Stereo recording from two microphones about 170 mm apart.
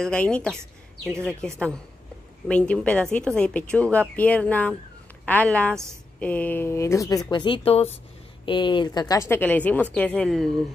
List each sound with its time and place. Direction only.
0.0 s speech: 5° left (ahead or behind)
7.2 s a woman's voice: 30° left (ahead or behind); by 10.5 s centre (ahead or behind)